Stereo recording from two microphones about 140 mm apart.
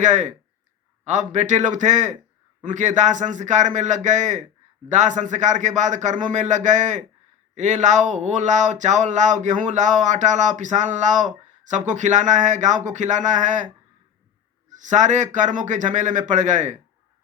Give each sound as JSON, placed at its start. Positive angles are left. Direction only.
{"t": 0.0, "sound": "speech", "side_deg": -60}
{"t": 14.7, "sound": "speech", "side_deg": -60}